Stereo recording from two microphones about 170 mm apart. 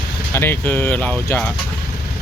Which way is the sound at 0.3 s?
10° left (ahead or behind).